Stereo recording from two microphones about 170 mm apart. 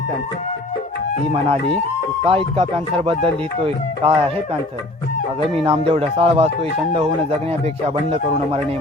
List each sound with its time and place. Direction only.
2.2 s speech: 35° right (ahead or behind)
5.6 s speech: 35° right (ahead or behind)